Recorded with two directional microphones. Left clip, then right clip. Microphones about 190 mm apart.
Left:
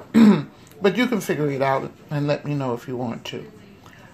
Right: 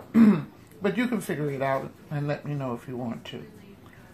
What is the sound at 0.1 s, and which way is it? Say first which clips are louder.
Throat clearing: left 5 dB; 20° left (ahead or behind).